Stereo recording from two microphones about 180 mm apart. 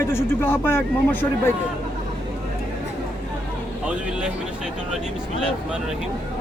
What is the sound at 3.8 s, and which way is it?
Speech, 5° right (ahead or behind).